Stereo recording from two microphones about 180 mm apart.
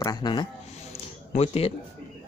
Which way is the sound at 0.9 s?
35° left (ahead or behind).